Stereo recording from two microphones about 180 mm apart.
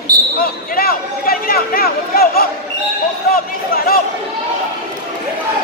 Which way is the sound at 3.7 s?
55° left (ahead or behind).